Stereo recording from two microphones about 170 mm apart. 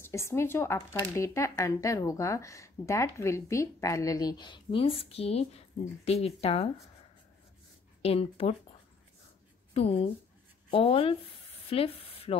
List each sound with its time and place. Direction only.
0.0 s speech: 15° left (ahead or behind); by 6.7 s 35° left (ahead or behind)
8.0 s speech: 35° left (ahead or behind)
9.8 s speech: 35° left (ahead or behind)
11.7 s a sound: 35° left (ahead or behind)